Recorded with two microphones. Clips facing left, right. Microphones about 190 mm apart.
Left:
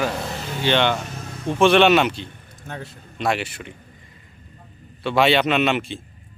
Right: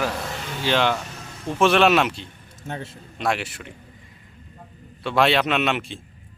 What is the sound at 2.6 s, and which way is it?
Speech, 25° right (ahead or behind).